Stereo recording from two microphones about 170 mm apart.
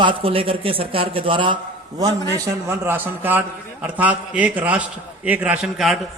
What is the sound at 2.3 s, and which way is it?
A man's voice, 15° right (ahead or behind).